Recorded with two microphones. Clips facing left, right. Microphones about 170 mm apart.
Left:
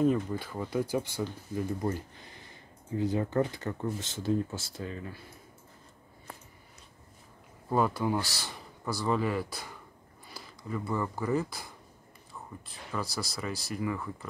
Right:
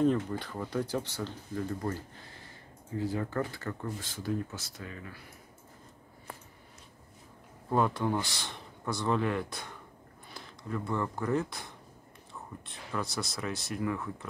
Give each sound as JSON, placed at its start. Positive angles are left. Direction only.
{"t": 0.0, "sound": "speech", "side_deg": 5}
{"t": 7.7, "sound": "speech", "side_deg": 5}